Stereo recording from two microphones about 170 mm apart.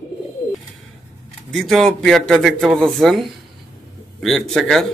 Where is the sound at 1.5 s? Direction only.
Centre (ahead or behind).